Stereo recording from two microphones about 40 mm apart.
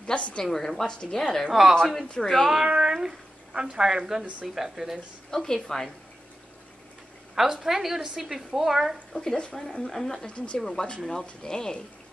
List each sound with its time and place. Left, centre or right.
0.0 s a woman's voice: left
0.4 s a woman's voice: centre
0.8 s a woman's voice: left
1.5 s a woman's voice: centre
2.2 s a woman's voice: centre
2.6 s a woman's voice: right
5.3 s a woman's voice: centre
7.3 s a woman's voice: centre
9.1 s a woman's voice: centre
10.2 s speech: left
10.6 s a woman's voice: centre